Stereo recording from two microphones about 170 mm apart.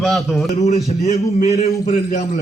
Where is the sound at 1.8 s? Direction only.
45° left (ahead or behind).